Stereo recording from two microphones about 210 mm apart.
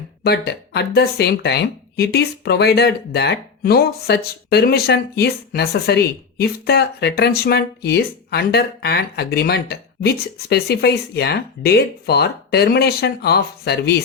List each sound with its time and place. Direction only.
0.3 s speech: 50° left (ahead or behind)